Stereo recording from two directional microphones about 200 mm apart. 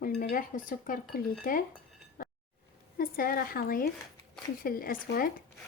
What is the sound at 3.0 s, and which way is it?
Speech, 45° left (ahead or behind).